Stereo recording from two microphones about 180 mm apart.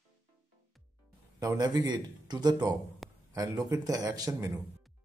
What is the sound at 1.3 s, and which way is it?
Speech, 20° right (ahead or behind).